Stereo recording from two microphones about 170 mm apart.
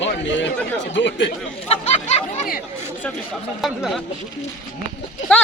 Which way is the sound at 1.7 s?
40° left (ahead or behind).